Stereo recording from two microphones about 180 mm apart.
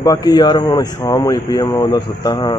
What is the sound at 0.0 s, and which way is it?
Speech, 20° left (ahead or behind).